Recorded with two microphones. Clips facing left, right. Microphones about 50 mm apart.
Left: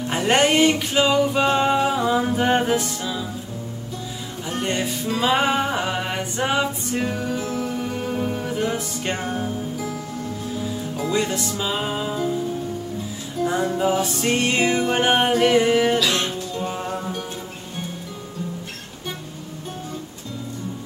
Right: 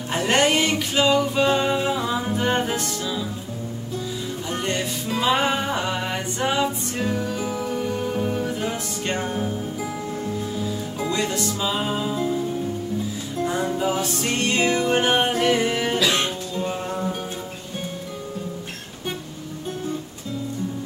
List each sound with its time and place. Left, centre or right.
0.1 s music: centre
4.6 s music: centre
7.4 s music: centre
8.0 s music: centre
9.8 s music: centre
11.1 s music: centre
13.6 s music: centre
15.3 s music: centre
16.0 s music: right
16.5 s music: centre